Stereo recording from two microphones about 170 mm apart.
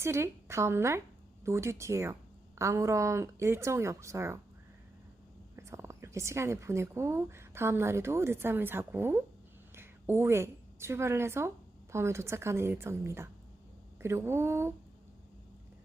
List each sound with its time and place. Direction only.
0.0 s speech: 15° right (ahead or behind)
5.5 s a woman's voice: 15° right (ahead or behind)